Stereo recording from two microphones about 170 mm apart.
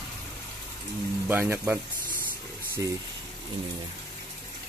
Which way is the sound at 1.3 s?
10° right (ahead or behind).